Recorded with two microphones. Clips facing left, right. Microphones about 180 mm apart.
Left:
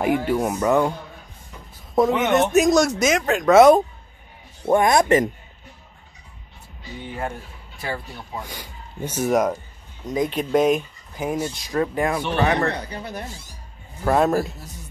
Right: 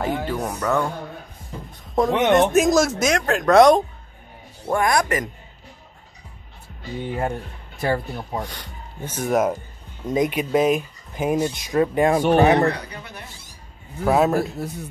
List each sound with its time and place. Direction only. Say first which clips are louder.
0.0 s speech: left 4 dB; 15° left (ahead or behind)
1.5 s a sound: right 8 dB; 30° right (ahead or behind)
2.0 s speech: right 1 dB; 5° left (ahead or behind)
4.6 s speech: left 4 dB; 20° left (ahead or behind)
7.8 s speech: right 7 dB; 40° right (ahead or behind)
8.5 s speech: even; 10° left (ahead or behind)
9.3 s speech: even; 5° right (ahead or behind)
10.0 s speech: right 2 dB; 20° right (ahead or behind)
10.5 s speech: left 2 dB; 5° right (ahead or behind)
11.1 s speech: right 4 dB; 20° right (ahead or behind)
12.1 s speech: right 7 dB; 45° right (ahead or behind)
12.4 s speech: right 3 dB; 20° right (ahead or behind)
12.9 s speech: left 6 dB; 35° left (ahead or behind)
14.0 s speech: right 1 dB; 5° right (ahead or behind)